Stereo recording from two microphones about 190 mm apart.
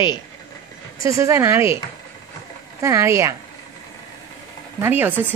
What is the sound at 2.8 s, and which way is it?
Speech, 15° right (ahead or behind).